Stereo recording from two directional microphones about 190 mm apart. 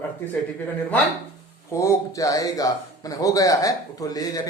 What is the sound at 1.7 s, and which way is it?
Speech, 15° left (ahead or behind).